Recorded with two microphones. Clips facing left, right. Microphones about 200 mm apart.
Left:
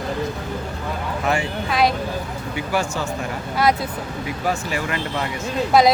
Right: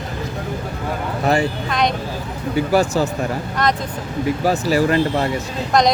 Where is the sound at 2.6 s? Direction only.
40° right (ahead or behind).